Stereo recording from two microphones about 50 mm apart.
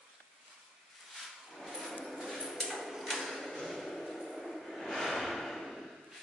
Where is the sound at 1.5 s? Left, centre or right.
Centre.